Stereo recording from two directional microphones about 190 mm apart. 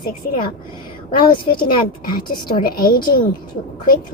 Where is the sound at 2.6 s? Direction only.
50° left (ahead or behind).